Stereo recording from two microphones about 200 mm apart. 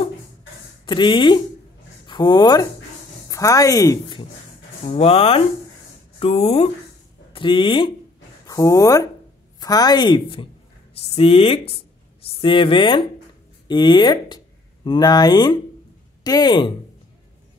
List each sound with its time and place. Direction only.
0.8 s speech: 25° left (ahead or behind)